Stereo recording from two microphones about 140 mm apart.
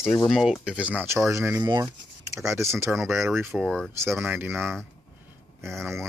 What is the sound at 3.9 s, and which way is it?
Speech, 20° right (ahead or behind).